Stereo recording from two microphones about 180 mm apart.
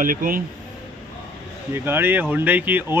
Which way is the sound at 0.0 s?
50° right (ahead or behind).